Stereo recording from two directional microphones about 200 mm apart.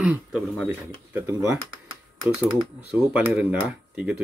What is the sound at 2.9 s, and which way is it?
Speech, 10° right (ahead or behind).